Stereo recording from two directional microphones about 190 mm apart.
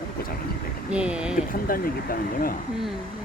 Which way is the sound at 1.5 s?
50° left (ahead or behind).